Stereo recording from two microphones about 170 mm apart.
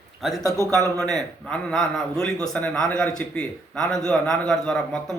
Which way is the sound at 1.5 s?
5° left (ahead or behind).